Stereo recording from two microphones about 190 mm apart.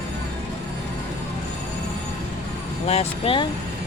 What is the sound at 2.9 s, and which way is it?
Speech, 30° left (ahead or behind).